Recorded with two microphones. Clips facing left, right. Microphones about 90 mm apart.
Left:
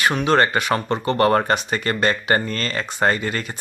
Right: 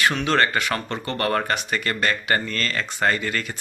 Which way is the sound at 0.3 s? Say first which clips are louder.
Left 3 dB; 20° left (ahead or behind).